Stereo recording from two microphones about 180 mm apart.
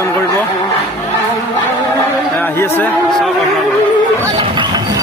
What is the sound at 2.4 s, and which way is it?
Speech, 10° left (ahead or behind).